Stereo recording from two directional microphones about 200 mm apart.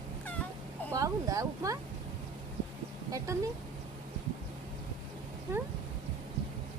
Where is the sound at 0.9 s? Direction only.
15° right (ahead or behind).